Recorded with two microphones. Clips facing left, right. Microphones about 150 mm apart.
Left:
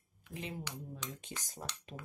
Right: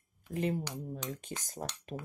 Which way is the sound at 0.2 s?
50° right (ahead or behind).